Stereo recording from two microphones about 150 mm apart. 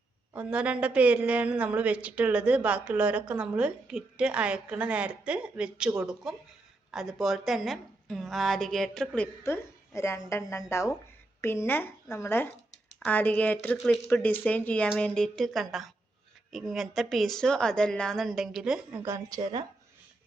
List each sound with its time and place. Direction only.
0.3 s a woman's voice: 10° right (ahead or behind)
9.4 s a woman's voice: 20° left (ahead or behind)
13.7 s a woman's voice: centre (ahead or behind)
14.1 s a woman's voice: 10° left (ahead or behind); by 19.0 s 5° right (ahead or behind)
19.0 s speech: 20° right (ahead or behind)
19.4 s speech: 30° right (ahead or behind)